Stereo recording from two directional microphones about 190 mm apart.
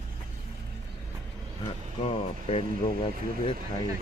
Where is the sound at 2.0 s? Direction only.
30° left (ahead or behind).